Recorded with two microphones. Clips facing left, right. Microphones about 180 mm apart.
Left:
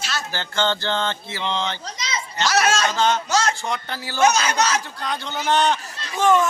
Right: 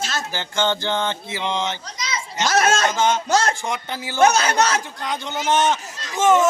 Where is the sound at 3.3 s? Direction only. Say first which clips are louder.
Right 2 dB; 55° right (ahead or behind).